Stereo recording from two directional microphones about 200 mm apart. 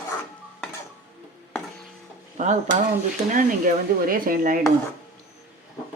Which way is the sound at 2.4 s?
40° right (ahead or behind).